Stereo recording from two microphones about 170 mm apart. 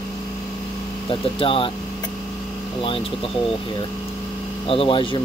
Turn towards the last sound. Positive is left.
turn(degrees=30)  # may be behind; listen again after turning